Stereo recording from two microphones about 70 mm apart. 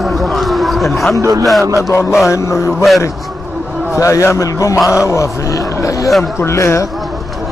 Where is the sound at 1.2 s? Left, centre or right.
Right.